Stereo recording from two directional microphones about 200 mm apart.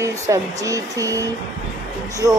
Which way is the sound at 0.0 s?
15° right (ahead or behind).